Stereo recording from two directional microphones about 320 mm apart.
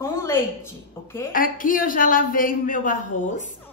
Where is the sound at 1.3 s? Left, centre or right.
Left.